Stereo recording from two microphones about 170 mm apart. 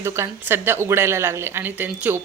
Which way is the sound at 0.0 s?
15° right (ahead or behind).